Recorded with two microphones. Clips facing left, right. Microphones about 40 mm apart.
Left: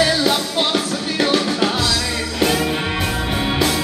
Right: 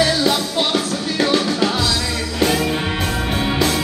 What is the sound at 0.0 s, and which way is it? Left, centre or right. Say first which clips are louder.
Music: even; centre.